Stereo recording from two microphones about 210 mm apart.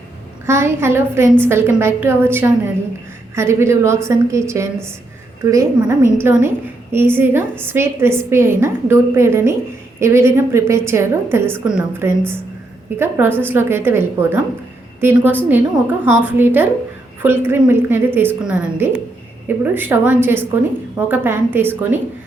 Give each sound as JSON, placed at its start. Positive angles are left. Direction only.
{"t": 0.4, "sound": "a woman's voice", "side_deg": -10}